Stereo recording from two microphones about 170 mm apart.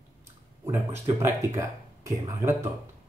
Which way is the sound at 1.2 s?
15° right (ahead or behind).